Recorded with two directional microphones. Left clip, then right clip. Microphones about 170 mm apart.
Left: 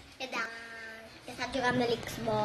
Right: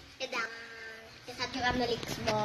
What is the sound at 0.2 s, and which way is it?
Music, 55° left (ahead or behind).